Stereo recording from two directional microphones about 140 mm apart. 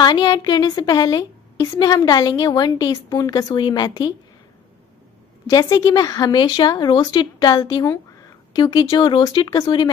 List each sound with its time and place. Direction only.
0.0 s speech: 30° left (ahead or behind)
5.5 s speech: 25° left (ahead or behind)